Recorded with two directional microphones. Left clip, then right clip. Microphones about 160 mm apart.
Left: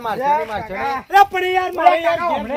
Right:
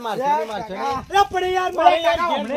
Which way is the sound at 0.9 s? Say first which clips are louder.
Left 5 dB; 15° left (ahead or behind).